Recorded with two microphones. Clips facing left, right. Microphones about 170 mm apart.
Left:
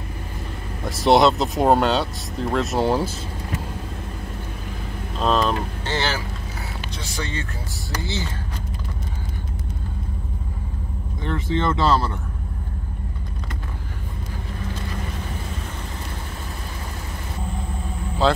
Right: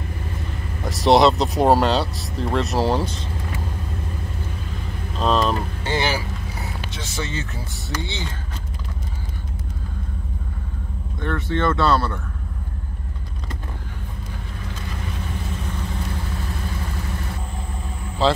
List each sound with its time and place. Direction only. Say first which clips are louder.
0.8 s speech: right 1 dB; centre (ahead or behind)
5.2 s speech: even; centre (ahead or behind)
5.9 s vehicle: right 3 dB; 10° right (ahead or behind)
6.9 s vehicle: even; centre (ahead or behind)
11.2 s speech: right 1 dB; 20° left (ahead or behind)
18.2 s speech: even; centre (ahead or behind)